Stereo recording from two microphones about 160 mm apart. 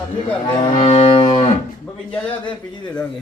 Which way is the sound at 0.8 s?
45° left (ahead or behind).